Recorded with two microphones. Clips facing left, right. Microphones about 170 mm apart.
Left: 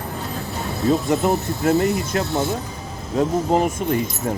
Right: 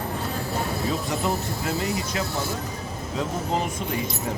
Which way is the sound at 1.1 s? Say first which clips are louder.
Left 7 dB; 60° left (ahead or behind).